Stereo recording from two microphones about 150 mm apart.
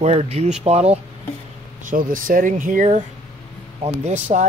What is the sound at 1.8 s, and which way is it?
Speech, 65° right (ahead or behind).